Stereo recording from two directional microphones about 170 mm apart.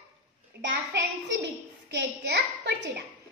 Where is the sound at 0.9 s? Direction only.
90° right.